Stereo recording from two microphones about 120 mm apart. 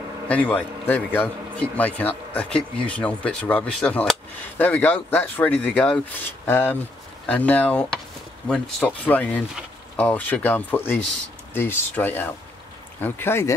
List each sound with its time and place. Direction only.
0.3 s a man's voice: 10° left (ahead or behind)